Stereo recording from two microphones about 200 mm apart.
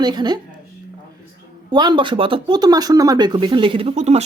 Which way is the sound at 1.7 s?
20° right (ahead or behind).